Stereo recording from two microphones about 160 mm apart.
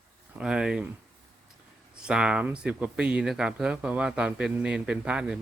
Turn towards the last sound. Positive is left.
turn(degrees=-5)  # may be behind; listen again after turning